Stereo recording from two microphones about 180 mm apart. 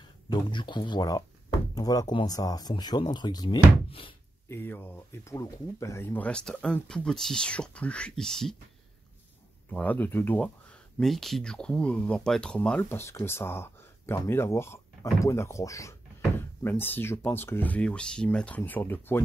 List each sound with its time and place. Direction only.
0.0 s speech: 25° left (ahead or behind)
4.5 s speech: 10° left (ahead or behind)
9.7 s speech: 10° left (ahead or behind)